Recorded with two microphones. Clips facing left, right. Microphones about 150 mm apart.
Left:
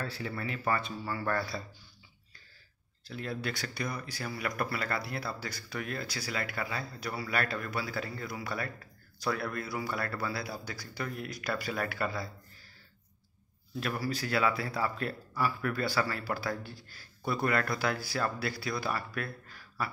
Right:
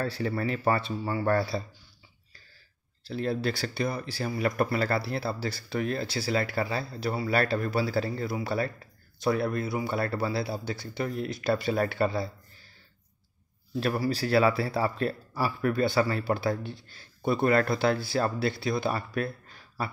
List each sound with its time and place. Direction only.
0.0 s speech: 35° right (ahead or behind)
3.0 s a man's voice: 30° right (ahead or behind)
13.7 s a man's voice: 30° right (ahead or behind)